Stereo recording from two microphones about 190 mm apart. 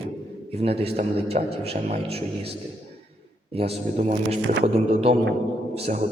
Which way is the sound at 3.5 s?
30° right (ahead or behind).